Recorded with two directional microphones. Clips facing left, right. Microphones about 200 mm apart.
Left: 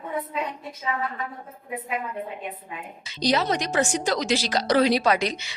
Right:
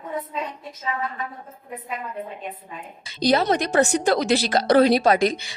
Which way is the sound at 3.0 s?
50° right (ahead or behind).